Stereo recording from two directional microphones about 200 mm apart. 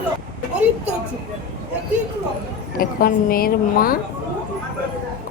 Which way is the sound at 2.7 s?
45° left (ahead or behind).